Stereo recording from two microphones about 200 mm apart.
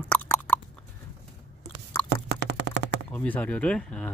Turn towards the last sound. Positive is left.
turn(degrees=5)  # may be behind; listen again after turning